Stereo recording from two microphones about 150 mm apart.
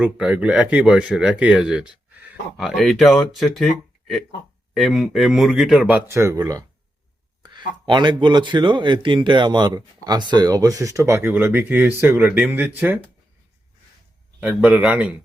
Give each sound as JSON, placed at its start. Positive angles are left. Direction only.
{"t": 0.0, "sound": "speech", "side_deg": -10}
{"t": 4.7, "sound": "speech", "side_deg": 0}
{"t": 6.1, "sound": "a man's voice", "side_deg": -20}
{"t": 14.4, "sound": "a man's voice", "side_deg": -10}